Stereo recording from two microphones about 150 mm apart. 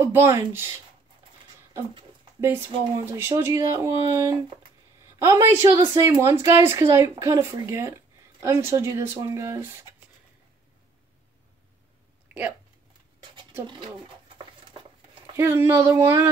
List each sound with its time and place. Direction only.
0.0 s speech: 15° right (ahead or behind)
2.4 s a woman's voice: 15° right (ahead or behind)
15.3 s speech: 15° right (ahead or behind)